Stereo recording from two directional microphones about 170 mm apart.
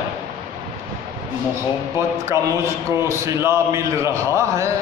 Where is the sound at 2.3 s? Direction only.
15° right (ahead or behind).